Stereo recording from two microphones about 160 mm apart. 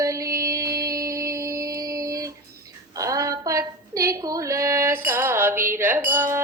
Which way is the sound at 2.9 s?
20° right (ahead or behind).